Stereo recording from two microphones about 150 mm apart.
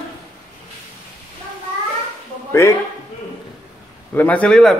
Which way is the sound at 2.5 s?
20° left (ahead or behind).